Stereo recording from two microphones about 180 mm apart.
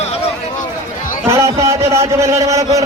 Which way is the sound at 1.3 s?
15° right (ahead or behind).